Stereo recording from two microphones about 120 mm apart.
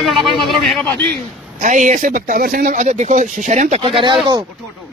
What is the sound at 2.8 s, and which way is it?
Speech, 75° right (ahead or behind).